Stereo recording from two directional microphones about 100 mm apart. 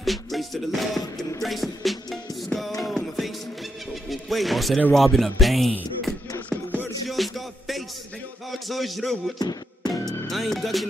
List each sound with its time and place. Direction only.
0.0 s music: centre (ahead or behind)
4.1 s speech: centre (ahead or behind)
7.1 s music: centre (ahead or behind)
8.5 s speech: centre (ahead or behind)
9.4 s music: 40° left (ahead or behind)
10.3 s speech: centre (ahead or behind)